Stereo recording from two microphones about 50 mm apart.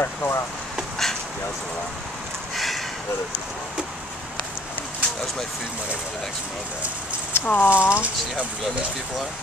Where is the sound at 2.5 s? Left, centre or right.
Centre.